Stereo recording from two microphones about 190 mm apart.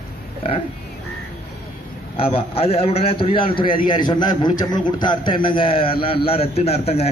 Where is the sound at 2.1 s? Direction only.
30° left (ahead or behind).